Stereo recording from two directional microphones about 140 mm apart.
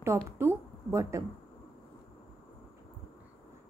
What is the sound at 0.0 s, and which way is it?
A woman's voice, 20° right (ahead or behind).